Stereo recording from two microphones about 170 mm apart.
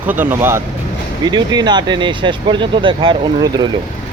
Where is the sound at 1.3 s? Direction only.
25° right (ahead or behind).